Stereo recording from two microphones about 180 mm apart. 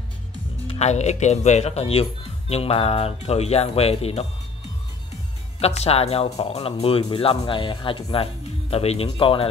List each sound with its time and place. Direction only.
0.7 s speech: 35° left (ahead or behind)
5.6 s speech: 35° left (ahead or behind)